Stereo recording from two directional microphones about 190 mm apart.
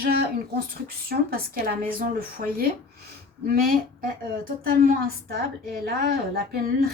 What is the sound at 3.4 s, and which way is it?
A woman's voice, 50° right (ahead or behind).